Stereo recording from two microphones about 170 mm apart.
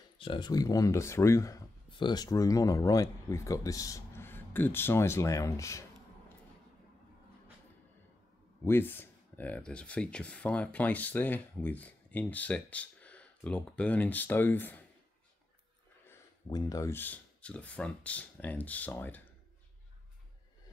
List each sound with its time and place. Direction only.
0.2 s speech: 30° left (ahead or behind)
8.6 s speech: 10° left (ahead or behind)
16.4 s speech: 20° left (ahead or behind)